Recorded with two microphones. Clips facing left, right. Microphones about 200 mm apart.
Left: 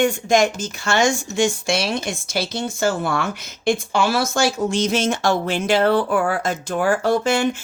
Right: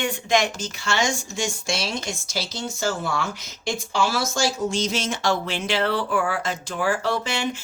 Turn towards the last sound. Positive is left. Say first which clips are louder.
# left 7 dB
turn(degrees=50)  # may be behind; listen again after turning